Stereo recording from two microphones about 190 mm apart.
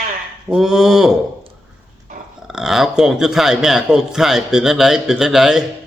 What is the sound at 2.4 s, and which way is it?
A man's voice, centre (ahead or behind).